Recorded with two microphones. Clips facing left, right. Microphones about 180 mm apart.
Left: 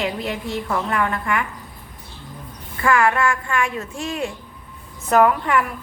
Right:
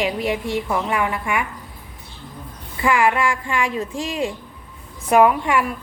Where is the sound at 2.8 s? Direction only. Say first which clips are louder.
Even; 15° right (ahead or behind).